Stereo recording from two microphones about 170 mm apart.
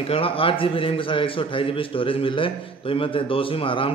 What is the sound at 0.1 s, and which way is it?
A man's voice, 35° left (ahead or behind).